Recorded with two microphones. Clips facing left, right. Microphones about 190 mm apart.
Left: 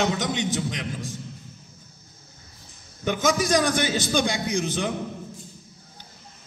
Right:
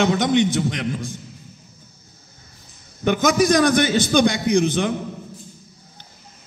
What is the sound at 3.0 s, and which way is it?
A man's voice, 75° right (ahead or behind).